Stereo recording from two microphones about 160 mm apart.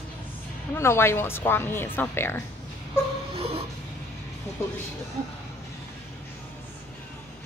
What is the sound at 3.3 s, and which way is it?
Music, 40° right (ahead or behind).